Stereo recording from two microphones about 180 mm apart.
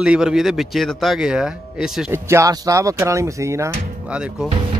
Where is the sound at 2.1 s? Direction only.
15° right (ahead or behind).